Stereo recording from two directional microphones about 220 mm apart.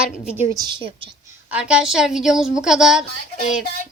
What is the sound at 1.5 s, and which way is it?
A woman's voice, 5° right (ahead or behind).